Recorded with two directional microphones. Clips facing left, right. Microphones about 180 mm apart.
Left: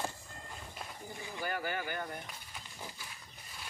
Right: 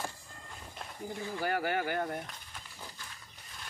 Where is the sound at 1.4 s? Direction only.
75° right (ahead or behind).